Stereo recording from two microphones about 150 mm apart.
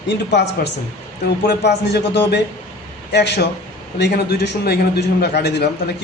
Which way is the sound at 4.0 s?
90° left.